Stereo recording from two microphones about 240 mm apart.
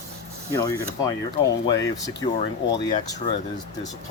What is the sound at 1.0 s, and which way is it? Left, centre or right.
Speech, centre.